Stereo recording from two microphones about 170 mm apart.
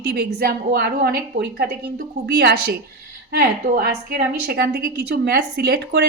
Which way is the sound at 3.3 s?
60° right (ahead or behind).